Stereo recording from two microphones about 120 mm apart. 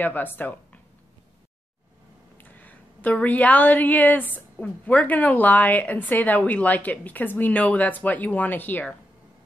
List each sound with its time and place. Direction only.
0.0 s a woman's voice: 15° left (ahead or behind)
2.3 s a woman's voice: 15° left (ahead or behind)